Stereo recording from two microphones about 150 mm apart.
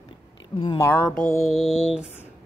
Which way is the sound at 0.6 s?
20° left (ahead or behind).